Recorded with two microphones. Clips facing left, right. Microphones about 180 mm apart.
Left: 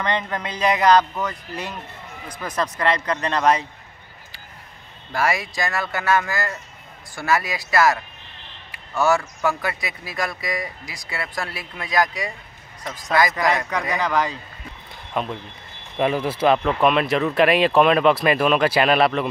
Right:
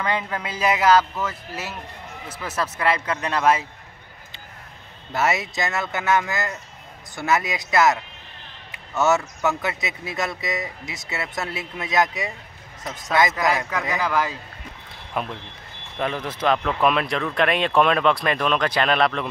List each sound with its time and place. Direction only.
0.0 s speech: 5° right (ahead or behind)
5.1 s speech: 25° right (ahead or behind)
13.3 s speech: centre (ahead or behind)
16.0 s a man's voice: 10° left (ahead or behind)